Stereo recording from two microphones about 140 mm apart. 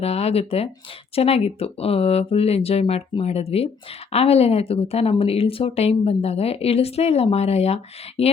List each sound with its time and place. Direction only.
0.0 s speech: 45° left (ahead or behind)